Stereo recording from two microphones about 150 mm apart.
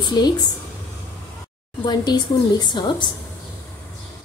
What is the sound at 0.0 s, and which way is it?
Speech, 25° left (ahead or behind).